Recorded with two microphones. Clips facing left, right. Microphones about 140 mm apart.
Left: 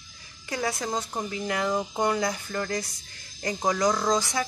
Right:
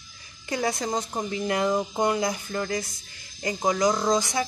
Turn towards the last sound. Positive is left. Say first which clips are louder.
# right 2 dB
turn(degrees=-20)  # may be behind; listen again after turning